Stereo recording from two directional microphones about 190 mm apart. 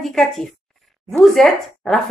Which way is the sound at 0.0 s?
Centre (ahead or behind).